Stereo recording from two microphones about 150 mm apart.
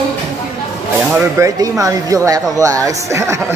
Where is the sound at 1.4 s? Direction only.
20° right (ahead or behind).